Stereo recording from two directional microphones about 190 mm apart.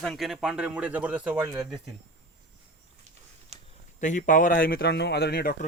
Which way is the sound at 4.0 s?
40° left (ahead or behind).